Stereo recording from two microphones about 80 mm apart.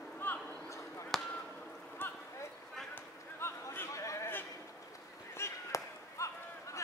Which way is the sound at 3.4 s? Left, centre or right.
Left.